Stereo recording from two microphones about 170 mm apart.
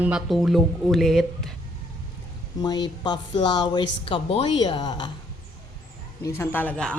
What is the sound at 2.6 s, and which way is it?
A woman's voice, 25° left (ahead or behind).